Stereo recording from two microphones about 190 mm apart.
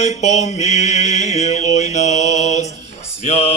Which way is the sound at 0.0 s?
35° left (ahead or behind).